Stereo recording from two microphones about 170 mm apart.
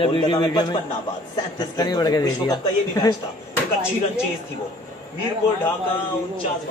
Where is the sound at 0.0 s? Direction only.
30° left (ahead or behind).